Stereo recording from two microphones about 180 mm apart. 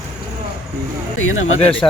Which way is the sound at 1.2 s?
90° left.